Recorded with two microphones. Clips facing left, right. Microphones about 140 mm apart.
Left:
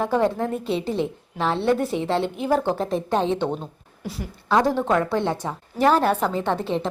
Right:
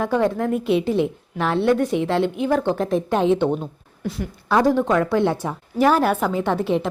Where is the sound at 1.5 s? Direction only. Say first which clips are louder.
Right 4 dB; 30° left (ahead or behind).